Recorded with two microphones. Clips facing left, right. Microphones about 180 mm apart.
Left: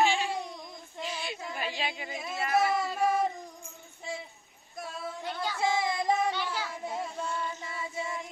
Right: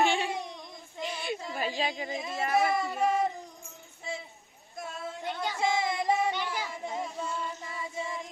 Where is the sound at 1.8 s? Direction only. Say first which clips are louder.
Right 4 dB; 35° right (ahead or behind).